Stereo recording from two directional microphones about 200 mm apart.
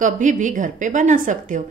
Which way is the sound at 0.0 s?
40° right (ahead or behind).